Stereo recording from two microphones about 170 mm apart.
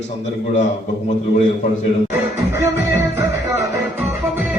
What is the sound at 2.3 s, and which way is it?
Music, 15° right (ahead or behind).